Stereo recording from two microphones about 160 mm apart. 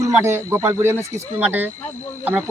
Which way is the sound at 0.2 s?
15° right (ahead or behind).